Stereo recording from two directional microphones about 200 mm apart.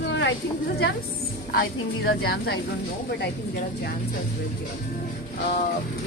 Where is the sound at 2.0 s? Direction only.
50° left (ahead or behind).